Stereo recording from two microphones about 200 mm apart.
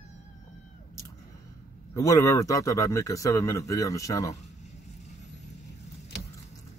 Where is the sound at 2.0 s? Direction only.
15° left (ahead or behind).